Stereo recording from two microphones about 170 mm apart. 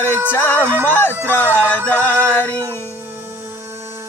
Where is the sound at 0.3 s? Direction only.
10° left (ahead or behind).